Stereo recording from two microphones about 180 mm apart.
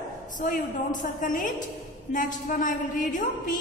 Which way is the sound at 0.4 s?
45° left (ahead or behind).